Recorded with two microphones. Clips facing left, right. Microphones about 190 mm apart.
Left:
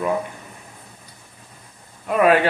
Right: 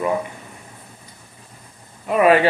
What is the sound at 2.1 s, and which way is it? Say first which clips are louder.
Speech: right 1 dB; centre (ahead or behind).